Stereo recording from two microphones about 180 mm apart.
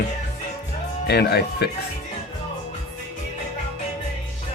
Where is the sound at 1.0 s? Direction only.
65° left (ahead or behind).